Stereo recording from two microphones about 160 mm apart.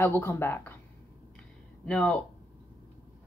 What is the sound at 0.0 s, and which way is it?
Speech, 15° left (ahead or behind).